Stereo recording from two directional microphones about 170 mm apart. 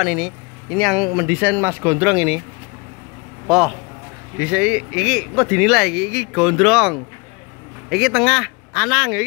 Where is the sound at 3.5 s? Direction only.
Centre (ahead or behind).